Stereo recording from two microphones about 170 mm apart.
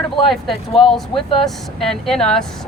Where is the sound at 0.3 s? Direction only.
Centre (ahead or behind).